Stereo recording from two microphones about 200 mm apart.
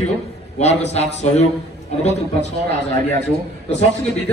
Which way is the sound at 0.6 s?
35° left (ahead or behind).